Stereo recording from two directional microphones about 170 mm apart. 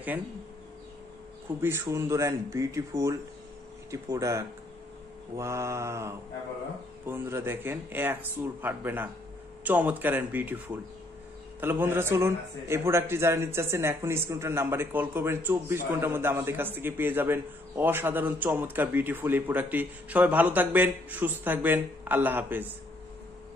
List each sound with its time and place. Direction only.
1.6 s a man's voice: 15° right (ahead or behind)